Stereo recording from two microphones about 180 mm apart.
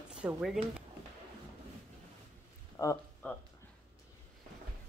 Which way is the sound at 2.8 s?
20° left (ahead or behind).